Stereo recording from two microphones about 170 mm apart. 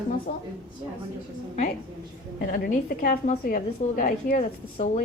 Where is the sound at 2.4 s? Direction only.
50° left (ahead or behind).